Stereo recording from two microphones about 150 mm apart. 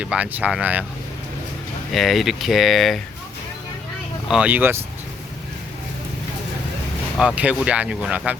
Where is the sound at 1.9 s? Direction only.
Centre (ahead or behind).